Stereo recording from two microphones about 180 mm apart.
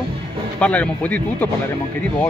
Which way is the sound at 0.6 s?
10° left (ahead or behind).